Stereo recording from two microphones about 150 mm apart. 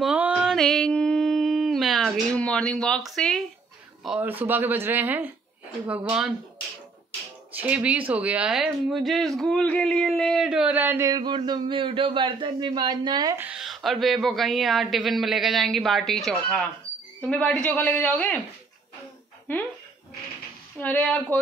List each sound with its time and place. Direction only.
0.0 s mantra: 10° right (ahead or behind)
4.0 s speech: 10° right (ahead or behind)
7.5 s speech: 10° right (ahead or behind)
11.1 s a man's voice: 30° right (ahead or behind)
13.4 s a woman's voice: 5° right (ahead or behind)
19.5 s a woman's voice: 15° left (ahead or behind)
20.8 s a woman's voice: 10° left (ahead or behind)